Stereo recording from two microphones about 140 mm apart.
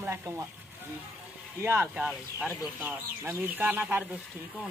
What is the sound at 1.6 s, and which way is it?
Speech, 20° right (ahead or behind).